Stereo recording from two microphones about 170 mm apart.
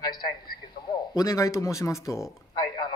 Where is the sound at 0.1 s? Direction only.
25° left (ahead or behind).